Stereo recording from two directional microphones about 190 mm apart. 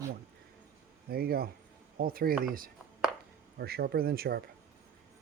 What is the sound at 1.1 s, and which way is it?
Speech, 55° right (ahead or behind).